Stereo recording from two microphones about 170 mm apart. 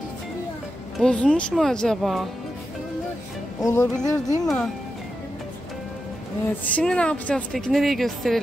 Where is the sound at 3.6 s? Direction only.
15° left (ahead or behind).